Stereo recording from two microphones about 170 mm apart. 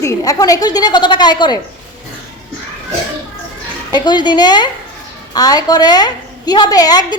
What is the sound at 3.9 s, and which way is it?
A woman's voice, 25° left (ahead or behind).